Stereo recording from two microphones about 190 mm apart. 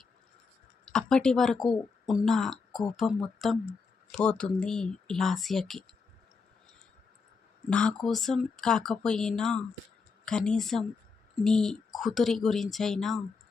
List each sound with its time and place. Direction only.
0.9 s speech: 5° left (ahead or behind)
7.7 s speech: 5° left (ahead or behind)